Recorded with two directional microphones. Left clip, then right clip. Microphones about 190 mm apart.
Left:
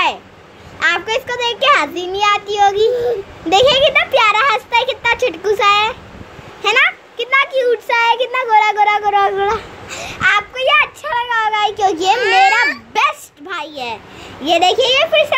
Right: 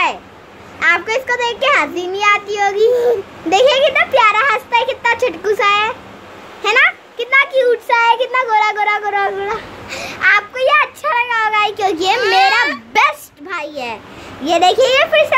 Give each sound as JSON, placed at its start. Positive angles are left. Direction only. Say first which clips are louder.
{"t": 0.7, "sound": "a child's voice", "louder": "right 2 dB", "side_deg": 0}
{"t": 2.9, "sound": "a child's voice", "louder": "right 3 dB", "side_deg": -20}
{"t": 3.4, "sound": "a child's voice", "louder": "even", "side_deg": 0}
{"t": 9.8, "sound": "a child's voice", "louder": "right 2 dB", "side_deg": 0}